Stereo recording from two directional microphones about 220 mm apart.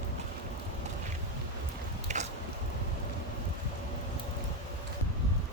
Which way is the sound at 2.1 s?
30° right (ahead or behind).